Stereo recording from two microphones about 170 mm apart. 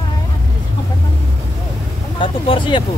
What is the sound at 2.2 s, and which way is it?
Speech, 30° left (ahead or behind).